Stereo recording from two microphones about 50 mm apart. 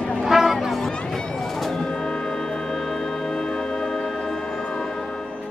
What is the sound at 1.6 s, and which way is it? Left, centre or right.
Music, centre.